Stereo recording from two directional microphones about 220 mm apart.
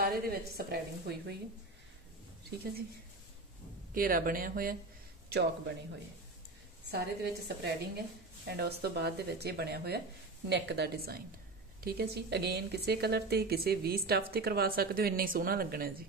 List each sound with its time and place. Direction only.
0.0 s a woman's voice: 45° right (ahead or behind)
3.9 s speech: 40° right (ahead or behind)
6.9 s a woman's voice: 45° right (ahead or behind)